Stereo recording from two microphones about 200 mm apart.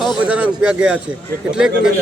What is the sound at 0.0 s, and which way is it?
A man's voice, 5° right (ahead or behind).